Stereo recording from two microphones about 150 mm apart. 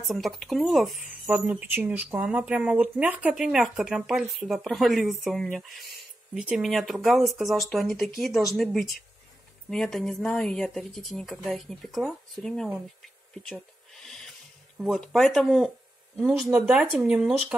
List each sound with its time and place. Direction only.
0.0 s speech: centre (ahead or behind)
9.7 s speech: centre (ahead or behind)
14.0 s a sound: centre (ahead or behind)
14.8 s speech: centre (ahead or behind)